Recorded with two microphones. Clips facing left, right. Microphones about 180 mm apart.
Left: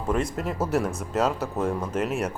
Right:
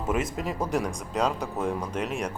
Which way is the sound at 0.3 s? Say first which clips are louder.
Left 2 dB; centre (ahead or behind).